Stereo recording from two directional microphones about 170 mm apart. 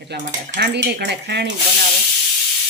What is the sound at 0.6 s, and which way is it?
Speech, 80° right.